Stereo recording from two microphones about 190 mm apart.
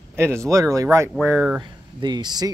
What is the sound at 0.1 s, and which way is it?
Speech, 15° right (ahead or behind).